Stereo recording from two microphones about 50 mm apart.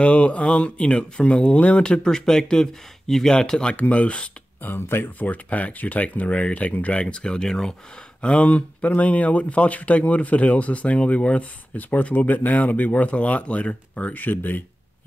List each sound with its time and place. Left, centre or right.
0.0 s speech: left
3.7 s speech: left
4.6 s speech: left
5.2 s speech: left